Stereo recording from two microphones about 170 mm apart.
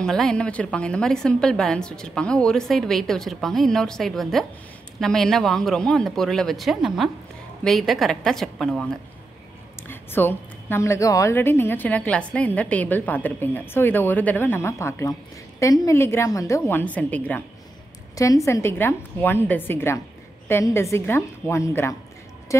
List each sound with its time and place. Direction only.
0.0 s a woman's voice: 5° left (ahead or behind)
9.8 s a woman's voice: 10° left (ahead or behind)
18.1 s a woman's voice: 20° left (ahead or behind)
22.5 s a sound: 20° left (ahead or behind)